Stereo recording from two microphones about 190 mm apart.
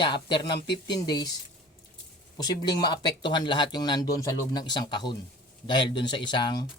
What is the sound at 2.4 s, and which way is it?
Speech, 20° left (ahead or behind).